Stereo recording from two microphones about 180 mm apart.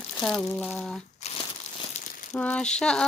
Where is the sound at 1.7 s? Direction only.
40° left (ahead or behind).